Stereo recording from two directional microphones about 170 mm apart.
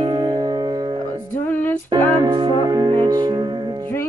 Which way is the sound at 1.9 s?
25° right (ahead or behind).